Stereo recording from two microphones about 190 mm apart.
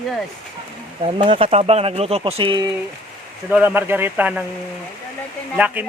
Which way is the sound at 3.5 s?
10° right (ahead or behind).